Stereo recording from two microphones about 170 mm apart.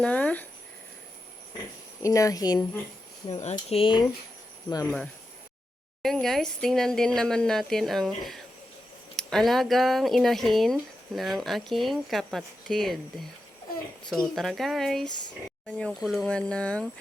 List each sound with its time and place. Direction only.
0.0 s speech: 5° left (ahead or behind)
2.0 s a woman's voice: 20° left (ahead or behind)
3.4 s speech: 35° left (ahead or behind)
6.0 s speech: centre (ahead or behind)